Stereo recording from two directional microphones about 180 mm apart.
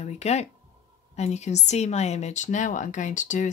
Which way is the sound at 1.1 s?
40° left (ahead or behind).